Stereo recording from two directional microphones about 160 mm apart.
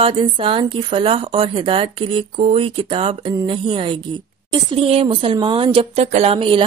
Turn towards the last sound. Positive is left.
turn(degrees=-35)  # may be behind; listen again after turning